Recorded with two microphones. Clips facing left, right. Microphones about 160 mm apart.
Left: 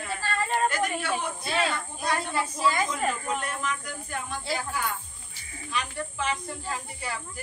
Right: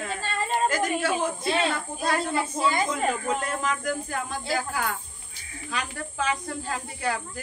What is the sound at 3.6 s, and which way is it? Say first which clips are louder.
Speech: right 6 dB; 90° right.